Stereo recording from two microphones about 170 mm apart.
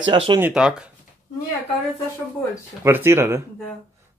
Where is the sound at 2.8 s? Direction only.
15° right (ahead or behind).